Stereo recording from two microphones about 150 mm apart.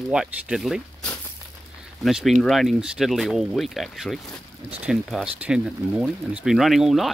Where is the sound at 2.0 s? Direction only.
Centre (ahead or behind).